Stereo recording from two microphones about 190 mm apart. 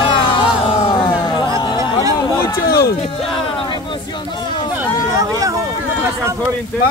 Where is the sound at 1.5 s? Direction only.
25° left (ahead or behind).